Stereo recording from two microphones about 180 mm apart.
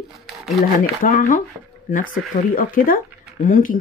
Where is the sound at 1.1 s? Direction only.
50° left (ahead or behind).